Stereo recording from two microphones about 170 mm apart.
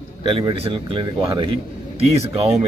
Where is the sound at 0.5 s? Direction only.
30° right (ahead or behind).